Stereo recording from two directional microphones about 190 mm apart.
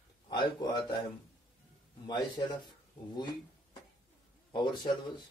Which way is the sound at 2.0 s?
20° left (ahead or behind).